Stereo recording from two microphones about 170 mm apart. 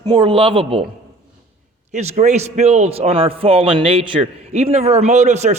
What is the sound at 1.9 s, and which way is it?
A man's voice, 45° right (ahead or behind).